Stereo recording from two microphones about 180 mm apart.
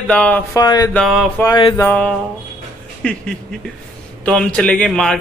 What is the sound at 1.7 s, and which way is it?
A man's voice, 10° left (ahead or behind).